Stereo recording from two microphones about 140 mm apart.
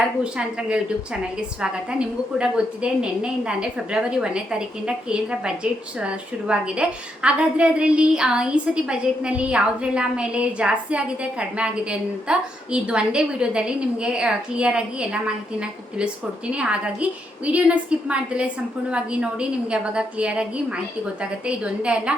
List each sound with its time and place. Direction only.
0.2 s a woman's voice: 5° right (ahead or behind)
16.5 s a woman's voice: 10° right (ahead or behind)